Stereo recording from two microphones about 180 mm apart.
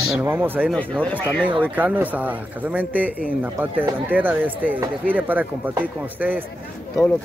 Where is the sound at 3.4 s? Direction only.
10° right (ahead or behind).